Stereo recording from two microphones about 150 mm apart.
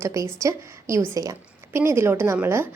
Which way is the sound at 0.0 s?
20° right (ahead or behind).